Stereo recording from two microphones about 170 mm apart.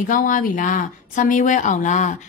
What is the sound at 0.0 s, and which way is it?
Speech, 50° left (ahead or behind).